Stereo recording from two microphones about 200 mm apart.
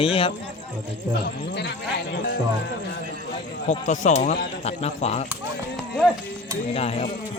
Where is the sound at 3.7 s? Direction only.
35° left (ahead or behind).